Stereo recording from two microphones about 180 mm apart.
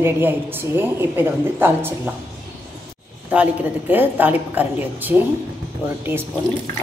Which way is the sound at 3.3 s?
10° right (ahead or behind).